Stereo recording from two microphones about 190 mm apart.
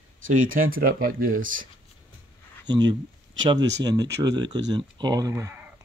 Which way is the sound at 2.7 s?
20° right (ahead or behind).